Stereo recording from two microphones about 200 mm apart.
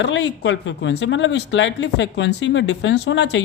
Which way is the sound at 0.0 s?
65° left (ahead or behind).